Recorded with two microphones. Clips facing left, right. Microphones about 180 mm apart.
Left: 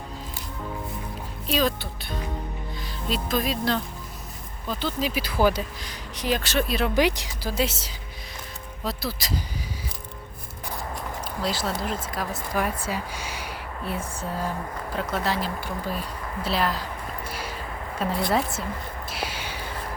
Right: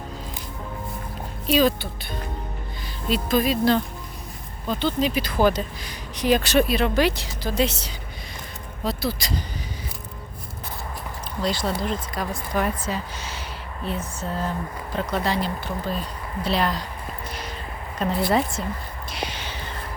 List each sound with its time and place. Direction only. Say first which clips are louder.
1.5 s speech: right 5 dB; centre (ahead or behind)
6.1 s speech: right 6 dB; 15° right (ahead or behind)
6.7 s speech: right 3 dB; centre (ahead or behind)
6.9 s speech: right 1 dB; 15° left (ahead or behind)
11.4 s speech: right 3 dB; 5° left (ahead or behind)
17.2 s a sound: even; 10° left (ahead or behind)
18.2 s speech: right 3 dB; centre (ahead or behind)
19.1 s whispering: right 2 dB; 5° left (ahead or behind)